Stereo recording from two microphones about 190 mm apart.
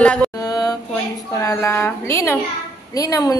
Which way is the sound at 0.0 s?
5° left (ahead or behind).